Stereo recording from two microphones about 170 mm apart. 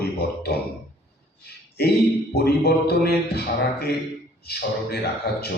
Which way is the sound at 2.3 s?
70° left (ahead or behind).